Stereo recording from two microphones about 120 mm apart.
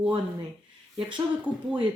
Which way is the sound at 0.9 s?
40° right (ahead or behind).